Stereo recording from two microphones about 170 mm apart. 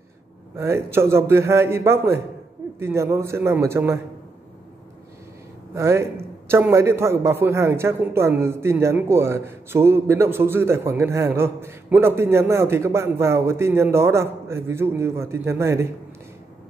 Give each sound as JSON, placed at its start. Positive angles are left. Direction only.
{"t": 0.6, "sound": "a man's voice", "side_deg": -15}
{"t": 5.8, "sound": "a man's voice", "side_deg": -15}